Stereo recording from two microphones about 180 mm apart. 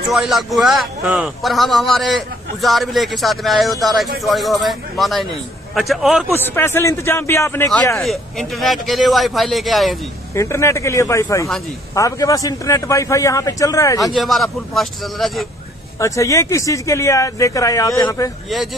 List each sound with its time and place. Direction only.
0.1 s a man's voice: centre (ahead or behind)
6.3 s speech: 15° left (ahead or behind)
8.0 s a man's voice: centre (ahead or behind)
10.3 s speech: 15° left (ahead or behind)
14.1 s a man's voice: centre (ahead or behind)
16.0 s speech: 15° left (ahead or behind)